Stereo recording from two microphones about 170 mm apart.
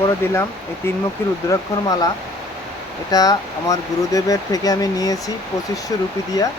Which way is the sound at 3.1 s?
20° left (ahead or behind).